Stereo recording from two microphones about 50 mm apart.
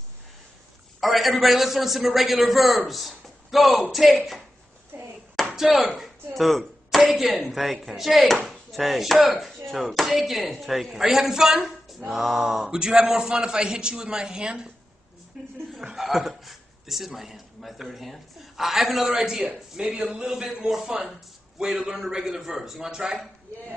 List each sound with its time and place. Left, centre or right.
1.0 s speech: centre
4.9 s hands: right
5.4 s a sound: centre
6.3 s speech: centre
8.5 s chopping: centre
9.3 s speech: centre
12.7 s a man's voice: centre